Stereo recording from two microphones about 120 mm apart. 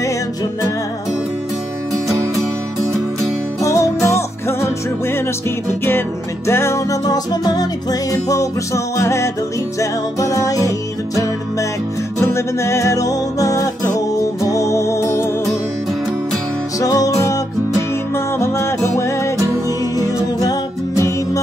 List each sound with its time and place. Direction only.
3.6 s music: 25° left (ahead or behind)
12.2 s music: 20° left (ahead or behind)
16.8 s music: 30° left (ahead or behind)
19.3 s music: 25° right (ahead or behind)
20.0 s music: 30° left (ahead or behind)